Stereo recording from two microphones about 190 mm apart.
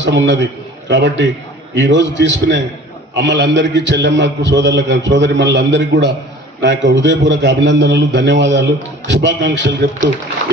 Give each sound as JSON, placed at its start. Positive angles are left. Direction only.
{"t": 0.0, "sound": "a man's voice", "side_deg": -65}